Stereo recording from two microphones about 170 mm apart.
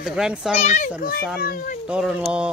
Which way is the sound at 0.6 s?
45° left (ahead or behind).